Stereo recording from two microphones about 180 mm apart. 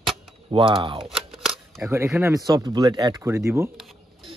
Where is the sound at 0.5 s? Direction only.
30° right (ahead or behind).